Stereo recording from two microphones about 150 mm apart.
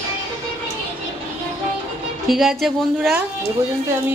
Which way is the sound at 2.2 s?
Centre (ahead or behind).